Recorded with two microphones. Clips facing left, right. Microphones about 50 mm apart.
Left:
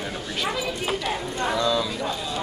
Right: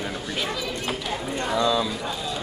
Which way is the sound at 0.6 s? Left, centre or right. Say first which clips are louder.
Left 2 dB; centre.